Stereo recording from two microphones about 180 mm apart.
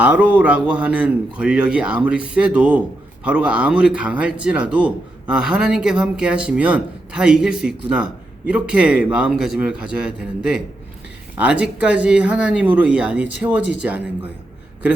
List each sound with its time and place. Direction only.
0.0 s a man's voice: 10° right (ahead or behind)